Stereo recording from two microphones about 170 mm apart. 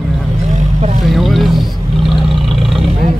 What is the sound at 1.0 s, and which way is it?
Vehicle, centre (ahead or behind).